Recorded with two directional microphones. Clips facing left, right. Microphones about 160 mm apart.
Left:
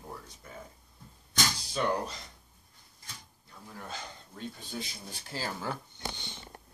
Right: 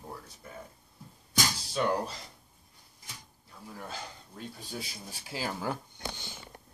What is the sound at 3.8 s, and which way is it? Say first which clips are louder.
Speech: left 1 dB; 5° right (ahead or behind).